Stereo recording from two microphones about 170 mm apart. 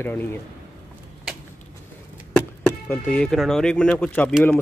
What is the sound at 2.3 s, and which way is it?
Speech, 10° left (ahead or behind).